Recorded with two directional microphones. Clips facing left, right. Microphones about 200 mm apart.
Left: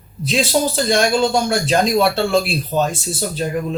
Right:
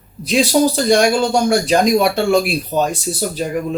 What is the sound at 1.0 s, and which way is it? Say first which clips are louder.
Speech: right 2 dB; 15° right (ahead or behind).